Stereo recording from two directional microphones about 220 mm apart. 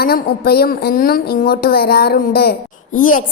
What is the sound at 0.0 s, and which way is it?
A woman's voice, 45° left (ahead or behind).